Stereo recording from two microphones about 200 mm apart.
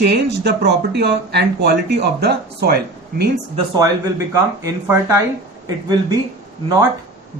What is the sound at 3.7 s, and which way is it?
Speech, 20° right (ahead or behind).